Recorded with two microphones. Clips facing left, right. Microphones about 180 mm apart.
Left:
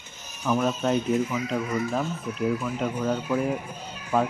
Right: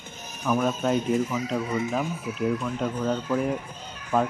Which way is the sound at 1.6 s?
30° right (ahead or behind).